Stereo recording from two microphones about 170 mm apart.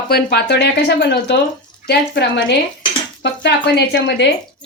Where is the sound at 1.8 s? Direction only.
85° left.